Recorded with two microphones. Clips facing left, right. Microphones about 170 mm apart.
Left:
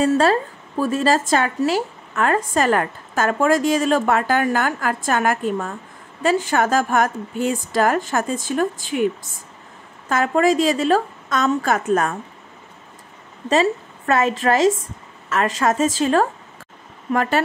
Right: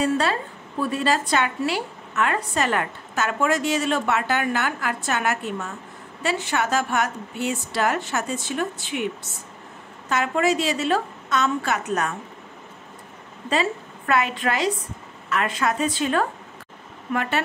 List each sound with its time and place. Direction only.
0.0 s a woman's voice: 40° left (ahead or behind)
13.5 s a woman's voice: 40° left (ahead or behind)